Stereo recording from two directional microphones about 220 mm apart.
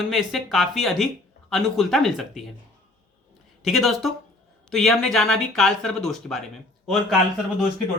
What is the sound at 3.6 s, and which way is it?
Speech, centre (ahead or behind).